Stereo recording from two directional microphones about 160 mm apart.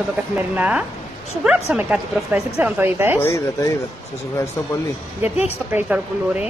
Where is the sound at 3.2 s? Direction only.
15° left (ahead or behind).